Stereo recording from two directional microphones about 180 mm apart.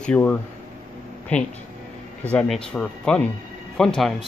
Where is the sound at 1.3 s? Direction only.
10° left (ahead or behind).